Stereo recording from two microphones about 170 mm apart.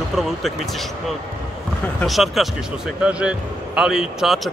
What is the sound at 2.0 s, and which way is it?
A man's voice, centre (ahead or behind).